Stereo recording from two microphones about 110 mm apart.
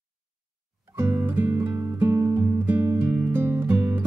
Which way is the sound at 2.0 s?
20° right (ahead or behind).